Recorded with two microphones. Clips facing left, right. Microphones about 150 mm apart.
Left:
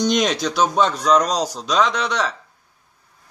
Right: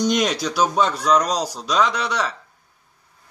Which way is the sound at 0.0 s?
5° right (ahead or behind).